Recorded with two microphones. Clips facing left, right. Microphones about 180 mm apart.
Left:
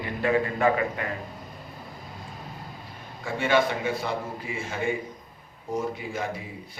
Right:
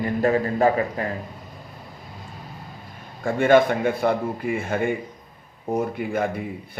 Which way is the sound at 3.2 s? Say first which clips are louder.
Right 7 dB; 50° right (ahead or behind).